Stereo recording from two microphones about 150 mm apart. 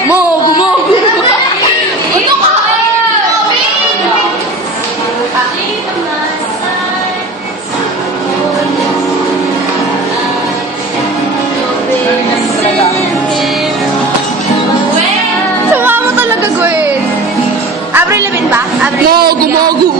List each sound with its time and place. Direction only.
15.7 s music: 15° right (ahead or behind)
17.9 s music: 15° right (ahead or behind)
19.0 s a sound: 85° right